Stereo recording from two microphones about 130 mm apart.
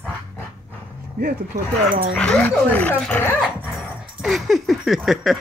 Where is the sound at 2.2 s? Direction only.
10° left (ahead or behind).